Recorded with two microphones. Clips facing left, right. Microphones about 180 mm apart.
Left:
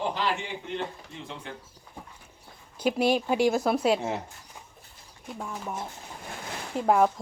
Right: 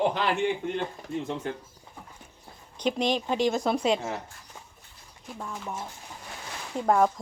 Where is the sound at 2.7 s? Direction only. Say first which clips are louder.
Left 2 dB; 5° left (ahead or behind).